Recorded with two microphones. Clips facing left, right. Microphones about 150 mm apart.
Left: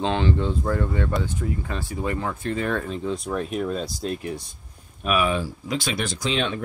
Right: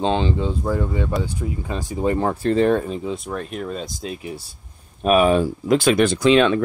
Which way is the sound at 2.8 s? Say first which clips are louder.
Right 2 dB; 15° right (ahead or behind).